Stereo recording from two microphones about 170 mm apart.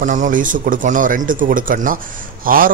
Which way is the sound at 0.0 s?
50° right (ahead or behind).